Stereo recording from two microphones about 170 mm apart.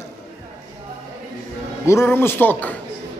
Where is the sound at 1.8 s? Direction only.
15° left (ahead or behind).